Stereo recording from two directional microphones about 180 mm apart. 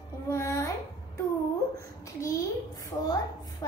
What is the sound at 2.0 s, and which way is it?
A child's voice, 20° left (ahead or behind).